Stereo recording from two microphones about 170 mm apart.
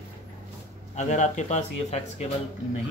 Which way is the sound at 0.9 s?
45° left (ahead or behind).